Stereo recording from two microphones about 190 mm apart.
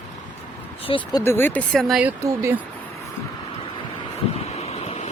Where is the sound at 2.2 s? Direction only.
15° right (ahead or behind).